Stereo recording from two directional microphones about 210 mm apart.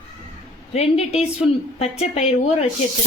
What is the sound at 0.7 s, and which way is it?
Speech, 30° left (ahead or behind).